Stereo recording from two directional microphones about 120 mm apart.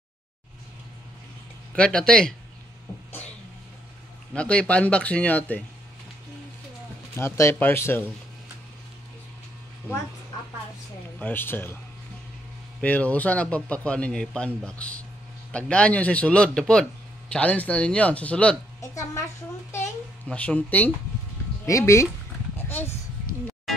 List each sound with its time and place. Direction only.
1.7 s a man's voice: 10° left (ahead or behind)
4.3 s a man's voice: 10° left (ahead or behind)
7.2 s a man's voice: 20° left (ahead or behind)
11.1 s a man's voice: 15° left (ahead or behind)
12.8 s a man's voice: 10° left (ahead or behind)
18.8 s a woman's voice: 25° left (ahead or behind)
20.2 s a man's voice: 10° left (ahead or behind)
21.6 s speech: 25° left (ahead or behind)
22.6 s a sound: 20° left (ahead or behind)